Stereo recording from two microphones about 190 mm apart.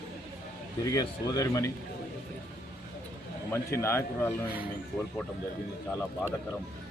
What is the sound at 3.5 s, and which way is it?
Speech, 15° left (ahead or behind).